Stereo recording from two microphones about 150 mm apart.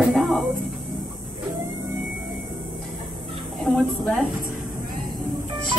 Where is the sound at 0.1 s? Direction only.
Centre (ahead or behind).